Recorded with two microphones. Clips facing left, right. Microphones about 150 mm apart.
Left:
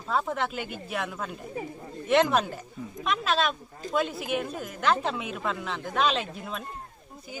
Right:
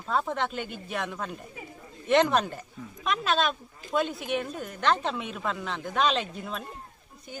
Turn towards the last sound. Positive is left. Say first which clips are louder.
# right 1 dB
turn(degrees=0)  # may be behind; listen again after turning